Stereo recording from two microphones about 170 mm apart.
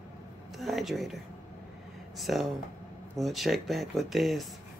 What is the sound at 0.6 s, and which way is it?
Speech, centre (ahead or behind).